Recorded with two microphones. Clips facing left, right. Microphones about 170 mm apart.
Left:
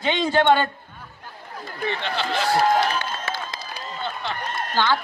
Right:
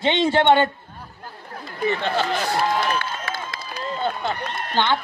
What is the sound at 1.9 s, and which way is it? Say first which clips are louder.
Speech: right 5 dB; 45° right (ahead or behind).